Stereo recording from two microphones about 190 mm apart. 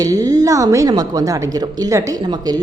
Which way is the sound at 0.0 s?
20° right (ahead or behind).